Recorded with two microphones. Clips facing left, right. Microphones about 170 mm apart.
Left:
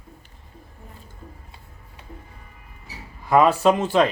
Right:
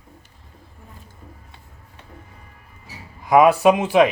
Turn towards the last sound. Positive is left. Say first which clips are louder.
# right 3 dB
turn(degrees=-10)  # may be behind; listen again after turning